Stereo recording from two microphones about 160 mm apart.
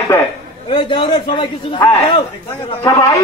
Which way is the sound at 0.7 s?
30° left (ahead or behind).